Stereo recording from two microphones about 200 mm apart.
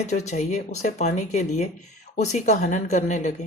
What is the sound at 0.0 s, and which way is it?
A woman's voice, 35° left (ahead or behind).